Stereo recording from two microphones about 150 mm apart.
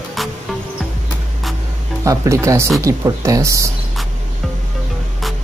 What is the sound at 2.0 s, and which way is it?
Speech, 20° right (ahead or behind).